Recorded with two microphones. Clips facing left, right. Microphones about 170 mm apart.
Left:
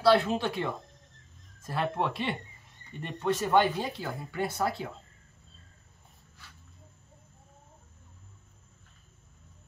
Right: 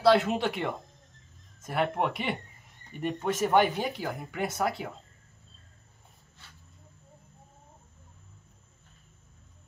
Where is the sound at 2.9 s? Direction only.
15° right (ahead or behind).